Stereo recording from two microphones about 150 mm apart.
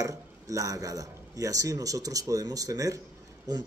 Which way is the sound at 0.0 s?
20° right (ahead or behind).